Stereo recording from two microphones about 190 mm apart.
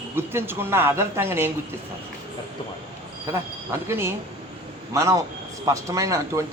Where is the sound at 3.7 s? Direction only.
15° right (ahead or behind).